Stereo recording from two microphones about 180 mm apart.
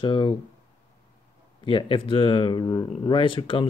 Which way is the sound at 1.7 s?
30° left (ahead or behind).